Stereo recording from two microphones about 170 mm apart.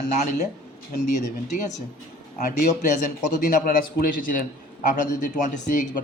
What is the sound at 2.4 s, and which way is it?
A man's voice, 45° left (ahead or behind).